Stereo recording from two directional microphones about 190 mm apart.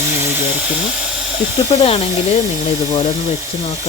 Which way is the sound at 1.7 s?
30° left (ahead or behind).